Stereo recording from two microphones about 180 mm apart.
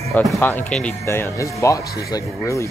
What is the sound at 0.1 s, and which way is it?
Speech, centre (ahead or behind).